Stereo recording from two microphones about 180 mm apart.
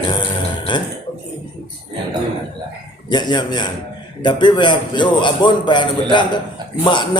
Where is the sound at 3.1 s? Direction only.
25° left (ahead or behind).